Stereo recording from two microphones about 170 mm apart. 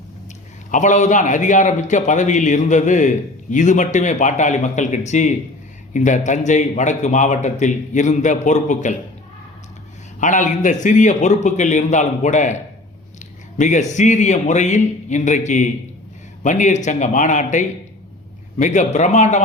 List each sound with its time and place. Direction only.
0.7 s a man's voice: 45° left (ahead or behind)
10.2 s a man's voice: 50° left (ahead or behind)